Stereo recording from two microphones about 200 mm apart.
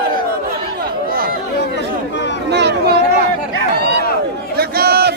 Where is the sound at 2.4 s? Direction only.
55° right (ahead or behind).